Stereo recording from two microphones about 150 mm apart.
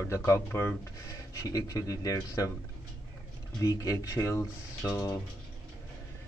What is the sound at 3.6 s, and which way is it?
Speech, 20° left (ahead or behind).